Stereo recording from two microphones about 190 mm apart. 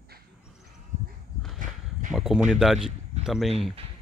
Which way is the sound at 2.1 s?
Centre (ahead or behind).